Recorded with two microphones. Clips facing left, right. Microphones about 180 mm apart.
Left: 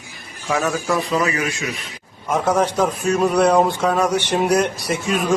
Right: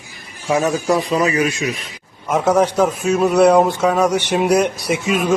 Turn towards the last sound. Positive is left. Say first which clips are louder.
# right 2 dB
turn(degrees=-10)  # may be behind; listen again after turning